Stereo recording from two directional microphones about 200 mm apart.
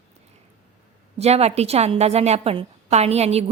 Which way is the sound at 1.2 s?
30° right (ahead or behind).